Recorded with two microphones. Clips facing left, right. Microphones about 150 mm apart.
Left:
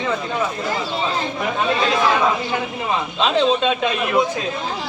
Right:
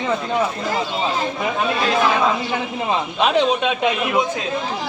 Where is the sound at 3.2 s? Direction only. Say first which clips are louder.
Even; 15° right (ahead or behind).